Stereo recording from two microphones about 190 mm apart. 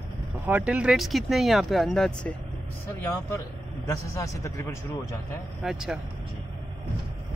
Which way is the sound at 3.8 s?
15° left (ahead or behind).